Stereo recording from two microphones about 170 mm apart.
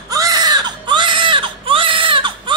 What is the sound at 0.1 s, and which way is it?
Baby cry, 20° right (ahead or behind).